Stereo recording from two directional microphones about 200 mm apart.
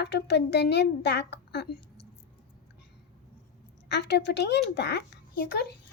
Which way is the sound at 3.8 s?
60° left (ahead or behind).